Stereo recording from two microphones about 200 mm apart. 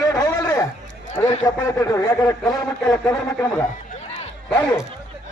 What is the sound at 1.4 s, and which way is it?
Speech, 15° left (ahead or behind).